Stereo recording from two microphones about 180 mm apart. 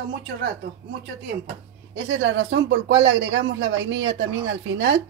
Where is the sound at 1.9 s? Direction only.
90° right.